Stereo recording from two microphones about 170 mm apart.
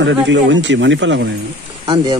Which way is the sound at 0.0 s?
90° right.